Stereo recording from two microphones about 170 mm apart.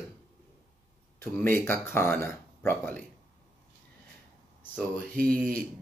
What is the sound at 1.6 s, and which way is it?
Speech, 15° left (ahead or behind).